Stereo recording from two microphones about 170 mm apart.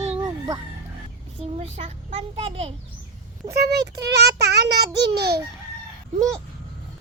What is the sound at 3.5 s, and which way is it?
Speech, 75° right (ahead or behind).